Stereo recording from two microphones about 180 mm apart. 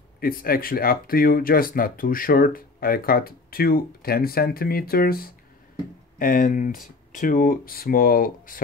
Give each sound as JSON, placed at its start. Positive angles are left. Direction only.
{"t": 0.2, "sound": "speech", "side_deg": 55}